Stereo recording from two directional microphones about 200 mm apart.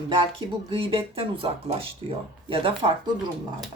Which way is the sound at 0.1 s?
25° right (ahead or behind).